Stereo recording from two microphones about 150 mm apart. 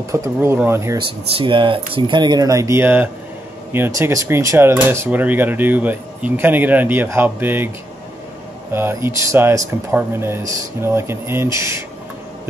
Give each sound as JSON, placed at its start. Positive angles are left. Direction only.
{"t": 0.1, "sound": "speech", "side_deg": -20}
{"t": 0.9, "sound": "speech", "side_deg": -35}
{"t": 8.7, "sound": "speech", "side_deg": -15}